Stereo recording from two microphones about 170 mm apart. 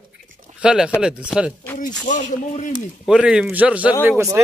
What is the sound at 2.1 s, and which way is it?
Speech, 45° left (ahead or behind).